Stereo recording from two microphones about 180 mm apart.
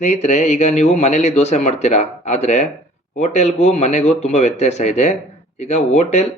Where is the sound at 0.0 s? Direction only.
40° left (ahead or behind).